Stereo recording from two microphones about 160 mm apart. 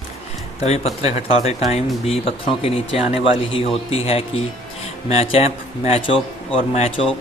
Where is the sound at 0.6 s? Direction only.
40° left (ahead or behind).